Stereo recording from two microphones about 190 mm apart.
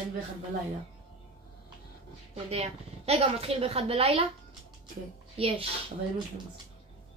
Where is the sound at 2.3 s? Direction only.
35° right (ahead or behind).